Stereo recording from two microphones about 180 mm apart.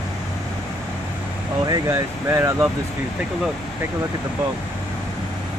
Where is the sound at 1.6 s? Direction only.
20° right (ahead or behind).